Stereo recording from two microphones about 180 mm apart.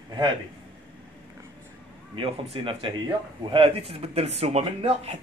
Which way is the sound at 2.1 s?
30° right (ahead or behind).